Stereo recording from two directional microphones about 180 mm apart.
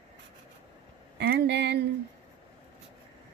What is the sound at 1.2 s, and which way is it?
Speech, 70° right (ahead or behind).